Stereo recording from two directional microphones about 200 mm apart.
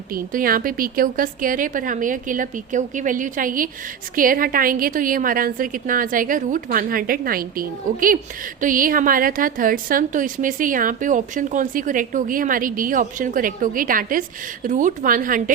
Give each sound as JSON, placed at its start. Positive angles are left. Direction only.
{"t": 0.1, "sound": "a woman's voice", "side_deg": -45}